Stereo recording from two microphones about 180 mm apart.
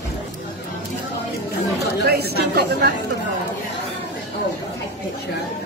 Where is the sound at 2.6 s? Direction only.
65° right (ahead or behind).